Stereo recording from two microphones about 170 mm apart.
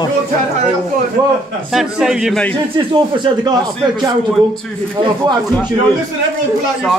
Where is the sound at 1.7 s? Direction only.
5° right (ahead or behind).